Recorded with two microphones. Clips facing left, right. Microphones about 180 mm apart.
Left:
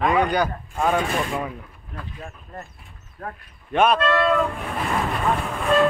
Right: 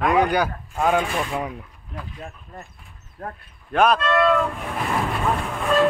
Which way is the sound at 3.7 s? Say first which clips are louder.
Even; centre (ahead or behind).